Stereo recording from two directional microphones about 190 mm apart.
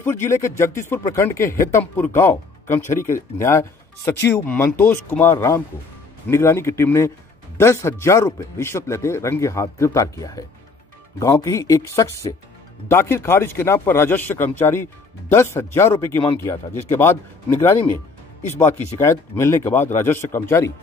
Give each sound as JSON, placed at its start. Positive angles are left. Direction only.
{"t": 0.0, "sound": "speech", "side_deg": 15}